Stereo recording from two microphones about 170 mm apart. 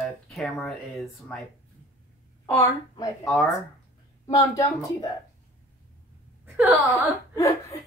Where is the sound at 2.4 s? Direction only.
20° left (ahead or behind).